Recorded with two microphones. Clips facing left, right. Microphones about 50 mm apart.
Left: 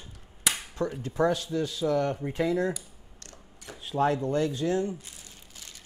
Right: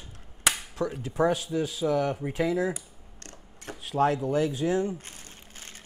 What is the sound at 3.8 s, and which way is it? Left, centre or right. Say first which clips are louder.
Speech: right 1 dB; centre.